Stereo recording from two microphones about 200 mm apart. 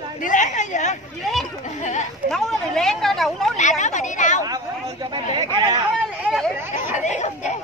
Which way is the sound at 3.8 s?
35° left (ahead or behind).